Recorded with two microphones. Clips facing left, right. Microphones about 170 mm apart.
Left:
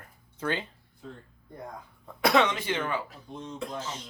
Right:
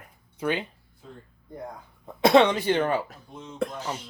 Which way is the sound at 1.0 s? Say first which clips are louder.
Left 2 dB; 5° right (ahead or behind).